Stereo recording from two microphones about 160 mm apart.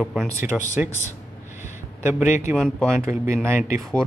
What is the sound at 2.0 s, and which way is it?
Speech, 15° right (ahead or behind).